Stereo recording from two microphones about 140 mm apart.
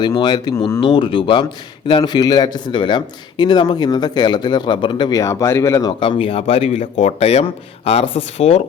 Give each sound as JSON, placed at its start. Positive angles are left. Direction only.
{"t": 0.0, "sound": "speech", "side_deg": 30}
{"t": 6.0, "sound": "speech", "side_deg": 40}